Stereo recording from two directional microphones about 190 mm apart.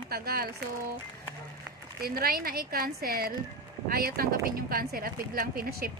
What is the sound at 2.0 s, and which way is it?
Speech, 50° right (ahead or behind).